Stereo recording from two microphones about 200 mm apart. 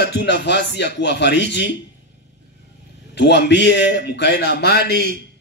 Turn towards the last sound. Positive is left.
turn(degrees=55)  # may be behind; listen again after turning